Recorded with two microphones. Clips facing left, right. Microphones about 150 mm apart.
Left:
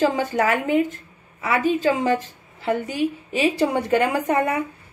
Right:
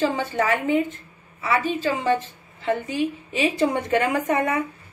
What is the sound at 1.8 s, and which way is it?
A woman's voice, 40° left (ahead or behind).